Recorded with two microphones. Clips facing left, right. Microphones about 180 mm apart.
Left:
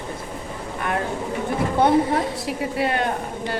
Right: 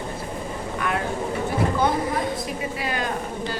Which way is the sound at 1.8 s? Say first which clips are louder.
Left 5 dB; 65° left (ahead or behind).